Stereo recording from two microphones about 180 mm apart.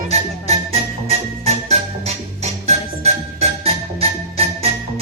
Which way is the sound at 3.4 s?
35° right (ahead or behind).